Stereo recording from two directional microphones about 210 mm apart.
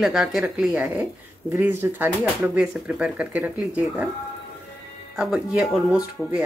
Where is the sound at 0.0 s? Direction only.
Centre (ahead or behind).